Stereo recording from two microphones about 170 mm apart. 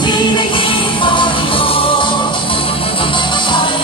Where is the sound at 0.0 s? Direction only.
30° left (ahead or behind).